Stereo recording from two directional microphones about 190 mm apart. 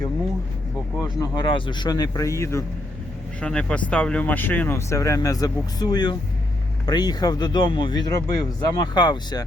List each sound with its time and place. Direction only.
1.2 s speech: 25° left (ahead or behind)